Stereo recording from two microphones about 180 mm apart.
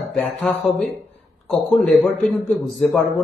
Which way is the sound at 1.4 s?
5° left (ahead or behind).